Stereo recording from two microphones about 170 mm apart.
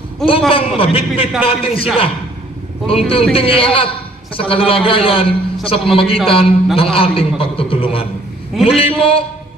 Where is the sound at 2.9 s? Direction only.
35° left (ahead or behind).